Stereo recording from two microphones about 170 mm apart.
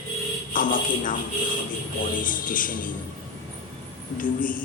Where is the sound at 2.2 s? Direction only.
55° left (ahead or behind).